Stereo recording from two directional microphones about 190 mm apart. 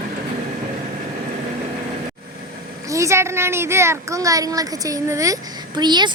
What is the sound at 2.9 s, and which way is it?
A child's voice, 15° right (ahead or behind).